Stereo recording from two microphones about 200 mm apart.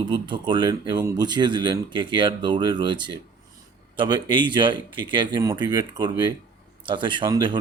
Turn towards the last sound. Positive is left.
turn(degrees=-20)  # may be behind; listen again after turning